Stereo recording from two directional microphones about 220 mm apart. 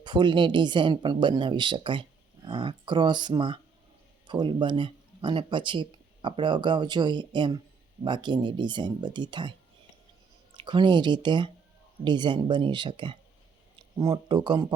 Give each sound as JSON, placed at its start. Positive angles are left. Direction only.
{"t": 0.0, "sound": "speech", "side_deg": -20}
{"t": 10.6, "sound": "speech", "side_deg": -20}